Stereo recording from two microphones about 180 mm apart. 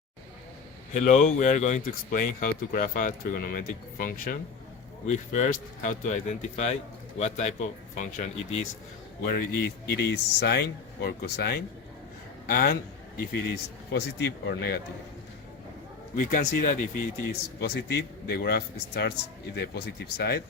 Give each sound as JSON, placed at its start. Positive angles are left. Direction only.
{"t": 0.9, "sound": "speech", "side_deg": 40}
{"t": 9.2, "sound": "speech", "side_deg": 55}
{"t": 9.9, "sound": "a man's voice", "side_deg": 65}
{"t": 13.9, "sound": "speech", "side_deg": 65}
{"t": 16.1, "sound": "speech", "side_deg": 50}
{"t": 17.6, "sound": "speech", "side_deg": 65}